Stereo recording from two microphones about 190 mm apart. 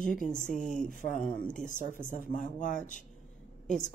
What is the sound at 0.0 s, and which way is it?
Speech, 45° left (ahead or behind).